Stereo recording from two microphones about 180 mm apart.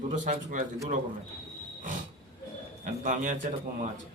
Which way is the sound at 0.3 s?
45° right (ahead or behind).